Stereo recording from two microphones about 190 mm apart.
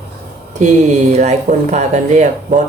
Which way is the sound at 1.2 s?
40° right (ahead or behind).